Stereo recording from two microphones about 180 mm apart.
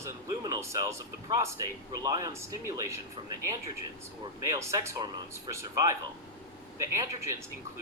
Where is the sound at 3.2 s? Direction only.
30° right (ahead or behind).